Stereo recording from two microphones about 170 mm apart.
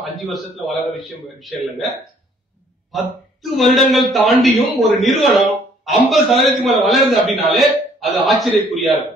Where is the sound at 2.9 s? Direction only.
Centre (ahead or behind).